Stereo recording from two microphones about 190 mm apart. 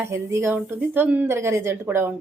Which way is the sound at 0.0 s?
15° right (ahead or behind).